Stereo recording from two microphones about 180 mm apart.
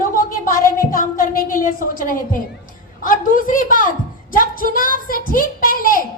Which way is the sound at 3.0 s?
50° left (ahead or behind).